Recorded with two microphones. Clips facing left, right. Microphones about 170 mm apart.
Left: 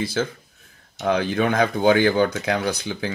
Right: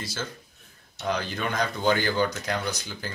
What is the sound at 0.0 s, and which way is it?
Speech, 55° left (ahead or behind).